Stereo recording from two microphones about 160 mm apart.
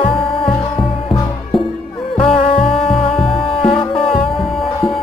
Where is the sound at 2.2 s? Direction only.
35° left (ahead or behind).